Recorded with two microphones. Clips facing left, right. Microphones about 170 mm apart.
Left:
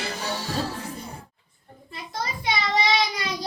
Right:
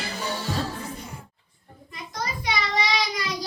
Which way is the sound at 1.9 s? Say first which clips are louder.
Left 1 dB; 30° left (ahead or behind).